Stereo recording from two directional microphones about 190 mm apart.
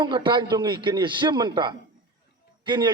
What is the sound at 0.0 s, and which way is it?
A man's voice, 25° right (ahead or behind).